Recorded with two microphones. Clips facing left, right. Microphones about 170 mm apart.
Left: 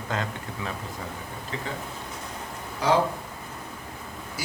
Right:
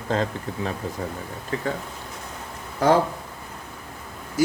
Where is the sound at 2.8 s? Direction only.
50° right (ahead or behind).